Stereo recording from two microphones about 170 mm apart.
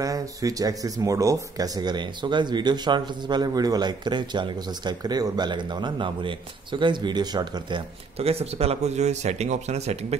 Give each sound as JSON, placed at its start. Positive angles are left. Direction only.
{"t": 0.0, "sound": "speech", "side_deg": -20}
{"t": 8.2, "sound": "speech", "side_deg": -35}